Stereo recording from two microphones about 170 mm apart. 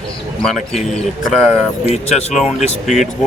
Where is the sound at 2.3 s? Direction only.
Centre (ahead or behind).